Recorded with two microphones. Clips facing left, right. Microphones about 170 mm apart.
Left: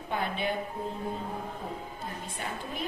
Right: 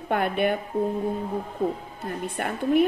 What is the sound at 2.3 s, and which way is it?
Speech, 65° right (ahead or behind).